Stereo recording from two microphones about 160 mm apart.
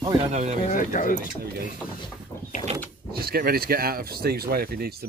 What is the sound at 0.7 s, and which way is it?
Speech, 55° left (ahead or behind).